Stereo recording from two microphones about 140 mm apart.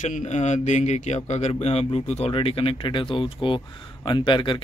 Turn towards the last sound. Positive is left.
turn(degrees=35)  # may be behind; listen again after turning